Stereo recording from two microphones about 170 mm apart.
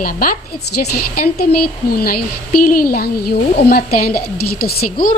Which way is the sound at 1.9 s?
60° left (ahead or behind).